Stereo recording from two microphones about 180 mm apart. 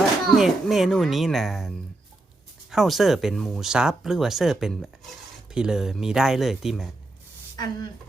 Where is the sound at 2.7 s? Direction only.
Centre (ahead or behind).